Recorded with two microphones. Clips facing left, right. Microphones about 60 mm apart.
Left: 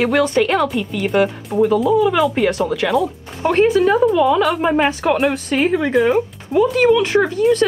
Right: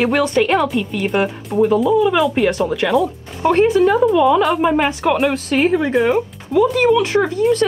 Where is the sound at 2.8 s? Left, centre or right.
Centre.